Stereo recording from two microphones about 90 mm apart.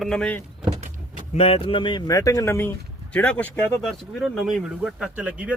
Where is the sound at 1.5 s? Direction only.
85° left; by 2.0 s 60° left (ahead or behind).